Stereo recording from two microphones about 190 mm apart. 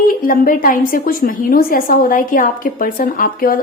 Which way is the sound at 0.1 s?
45° left (ahead or behind).